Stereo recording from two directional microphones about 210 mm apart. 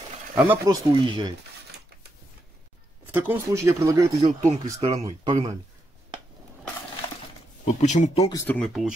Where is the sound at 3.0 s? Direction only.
10° right (ahead or behind).